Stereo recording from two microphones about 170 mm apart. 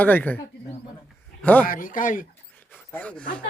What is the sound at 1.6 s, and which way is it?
Speech, 55° left (ahead or behind).